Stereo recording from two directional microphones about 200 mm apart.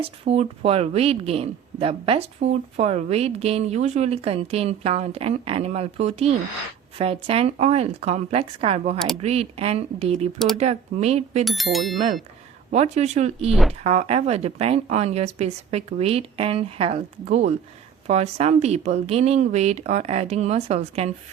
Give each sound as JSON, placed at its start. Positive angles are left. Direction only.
{"t": 0.0, "sound": "speech", "side_deg": -30}
{"t": 10.3, "sound": "speech", "side_deg": 0}
{"t": 10.6, "sound": "speech", "side_deg": -30}
{"t": 11.4, "sound": "speech", "side_deg": 0}
{"t": 12.7, "sound": "speech", "side_deg": -35}
{"t": 13.5, "sound": "speech", "side_deg": 0}
{"t": 13.8, "sound": "speech", "side_deg": -35}